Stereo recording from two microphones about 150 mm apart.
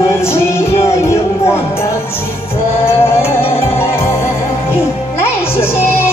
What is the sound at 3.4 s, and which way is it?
Music, 40° left (ahead or behind).